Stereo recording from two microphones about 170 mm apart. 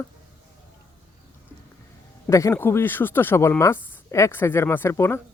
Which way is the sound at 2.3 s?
15° left (ahead or behind).